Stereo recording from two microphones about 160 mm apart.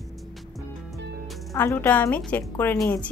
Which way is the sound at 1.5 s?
15° left (ahead or behind).